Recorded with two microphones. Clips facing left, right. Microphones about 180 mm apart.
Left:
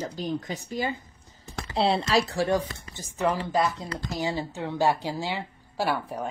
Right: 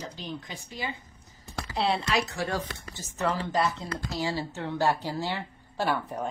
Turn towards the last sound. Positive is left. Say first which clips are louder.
# left 1 dB
turn(degrees=10)  # may be behind; listen again after turning